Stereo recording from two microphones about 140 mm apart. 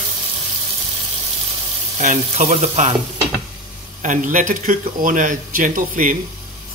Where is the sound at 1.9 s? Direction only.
65° right (ahead or behind).